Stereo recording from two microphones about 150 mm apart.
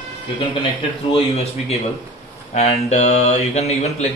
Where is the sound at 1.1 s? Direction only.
45° left (ahead or behind).